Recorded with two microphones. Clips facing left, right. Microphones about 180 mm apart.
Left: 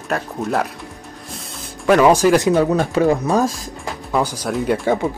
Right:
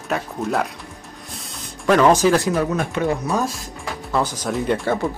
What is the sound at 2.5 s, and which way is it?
Speech, 30° left (ahead or behind).